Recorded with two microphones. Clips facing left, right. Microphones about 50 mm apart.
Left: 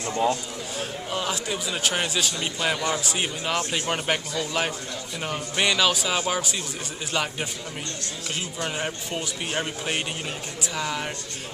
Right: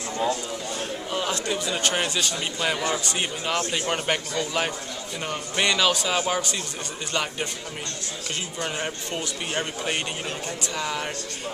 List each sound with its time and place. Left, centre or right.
0.1 s speech: left
0.7 s a man's voice: centre
8.5 s a man's voice: centre